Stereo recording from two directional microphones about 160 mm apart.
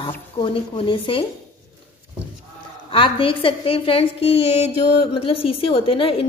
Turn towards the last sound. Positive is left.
turn(degrees=35)  # may be behind; listen again after turning